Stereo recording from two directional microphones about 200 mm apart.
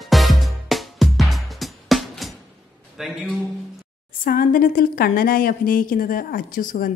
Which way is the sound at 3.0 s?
Centre (ahead or behind).